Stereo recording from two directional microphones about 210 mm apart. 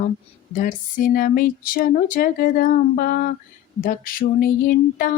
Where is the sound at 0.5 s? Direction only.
40° left (ahead or behind).